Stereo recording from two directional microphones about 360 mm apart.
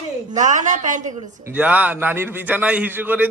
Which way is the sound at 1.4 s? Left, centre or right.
Centre.